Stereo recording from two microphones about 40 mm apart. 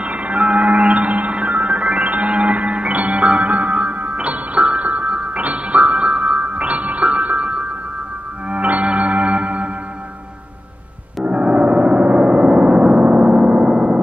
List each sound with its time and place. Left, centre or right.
0.0 s music: right
11.2 s gong: right